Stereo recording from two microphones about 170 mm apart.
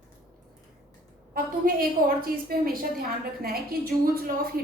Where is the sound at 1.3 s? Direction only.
60° right (ahead or behind).